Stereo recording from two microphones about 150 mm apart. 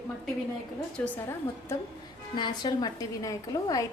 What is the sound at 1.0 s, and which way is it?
Speech, 10° left (ahead or behind).